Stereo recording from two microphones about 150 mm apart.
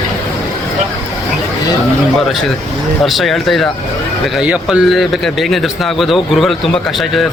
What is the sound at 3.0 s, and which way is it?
A man's voice, centre (ahead or behind).